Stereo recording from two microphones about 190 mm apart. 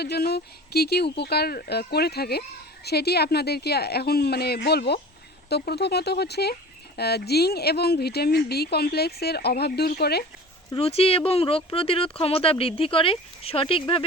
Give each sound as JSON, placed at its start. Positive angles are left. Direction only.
{"t": 0.0, "sound": "speech", "side_deg": 55}
{"t": 10.8, "sound": "speech", "side_deg": 30}